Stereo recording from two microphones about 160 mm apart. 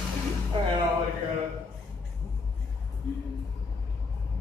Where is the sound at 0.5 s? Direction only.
35° right (ahead or behind).